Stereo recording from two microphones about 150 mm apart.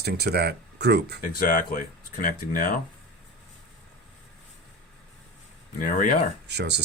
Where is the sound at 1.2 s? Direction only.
70° left (ahead or behind).